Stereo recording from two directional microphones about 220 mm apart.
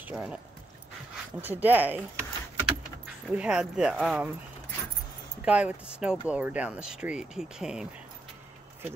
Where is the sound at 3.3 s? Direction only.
5° right (ahead or behind).